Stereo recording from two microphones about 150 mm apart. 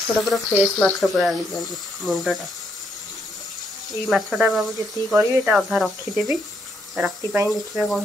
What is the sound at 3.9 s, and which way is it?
Speech, centre (ahead or behind).